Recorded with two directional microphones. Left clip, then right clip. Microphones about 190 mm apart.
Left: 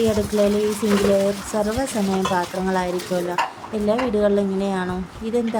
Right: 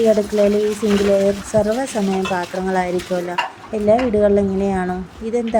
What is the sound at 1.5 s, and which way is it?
A woman's voice, 15° right (ahead or behind).